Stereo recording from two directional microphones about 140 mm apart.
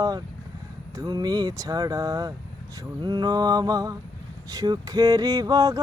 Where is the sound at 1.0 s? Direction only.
30° right (ahead or behind).